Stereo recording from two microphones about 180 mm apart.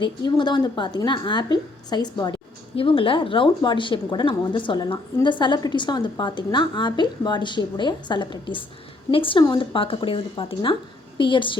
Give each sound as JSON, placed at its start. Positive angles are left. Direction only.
{"t": 0.0, "sound": "a woman's voice", "side_deg": 25}